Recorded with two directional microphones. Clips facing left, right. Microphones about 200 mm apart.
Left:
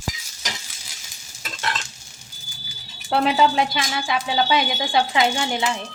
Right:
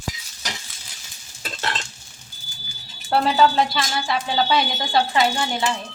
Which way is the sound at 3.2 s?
15° left (ahead or behind).